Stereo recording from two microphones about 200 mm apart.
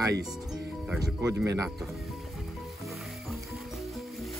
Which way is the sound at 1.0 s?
15° right (ahead or behind).